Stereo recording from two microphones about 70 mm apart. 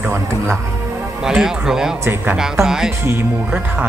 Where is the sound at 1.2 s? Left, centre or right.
Centre.